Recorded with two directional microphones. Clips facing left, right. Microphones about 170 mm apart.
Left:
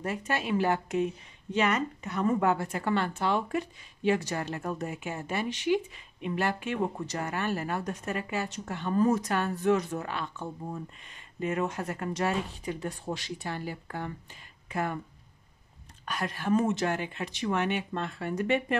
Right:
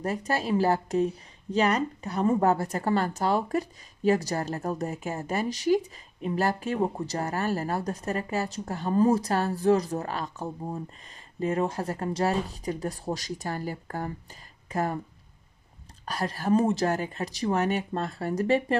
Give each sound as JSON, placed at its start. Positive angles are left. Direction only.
{"t": 0.0, "sound": "a woman's voice", "side_deg": -40}
{"t": 16.1, "sound": "a woman's voice", "side_deg": -35}